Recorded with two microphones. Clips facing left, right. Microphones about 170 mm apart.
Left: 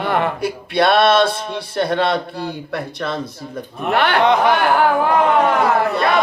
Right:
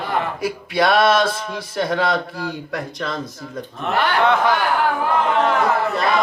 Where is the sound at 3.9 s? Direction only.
65° left (ahead or behind).